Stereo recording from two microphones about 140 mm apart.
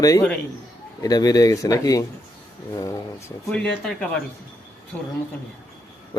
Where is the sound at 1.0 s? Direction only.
25° left (ahead or behind).